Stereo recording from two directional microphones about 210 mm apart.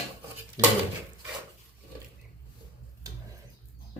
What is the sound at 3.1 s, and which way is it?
Tick-tock, 15° right (ahead or behind).